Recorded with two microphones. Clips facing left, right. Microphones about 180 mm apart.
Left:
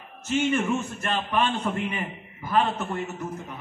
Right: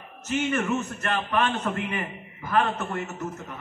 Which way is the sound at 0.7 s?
10° left (ahead or behind).